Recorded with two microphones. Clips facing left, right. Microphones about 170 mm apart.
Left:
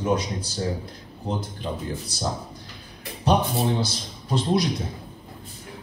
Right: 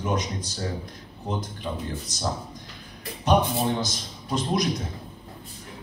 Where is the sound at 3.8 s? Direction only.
30° left (ahead or behind).